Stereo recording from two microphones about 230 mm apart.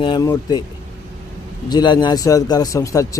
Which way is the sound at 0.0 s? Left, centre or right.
Centre.